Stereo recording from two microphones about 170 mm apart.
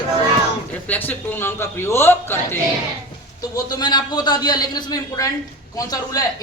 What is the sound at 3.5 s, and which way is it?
A man's voice, 25° left (ahead or behind).